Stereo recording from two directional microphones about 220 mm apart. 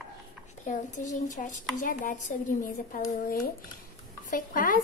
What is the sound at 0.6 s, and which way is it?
Speech, 35° left (ahead or behind).